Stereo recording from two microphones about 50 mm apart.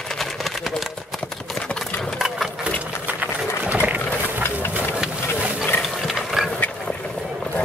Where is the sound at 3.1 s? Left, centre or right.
Right.